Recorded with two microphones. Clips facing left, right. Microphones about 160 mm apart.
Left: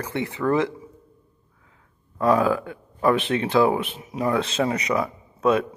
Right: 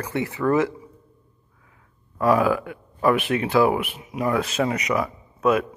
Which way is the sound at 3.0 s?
25° left (ahead or behind).